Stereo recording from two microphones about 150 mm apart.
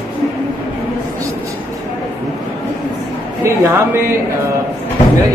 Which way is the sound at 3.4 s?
15° right (ahead or behind).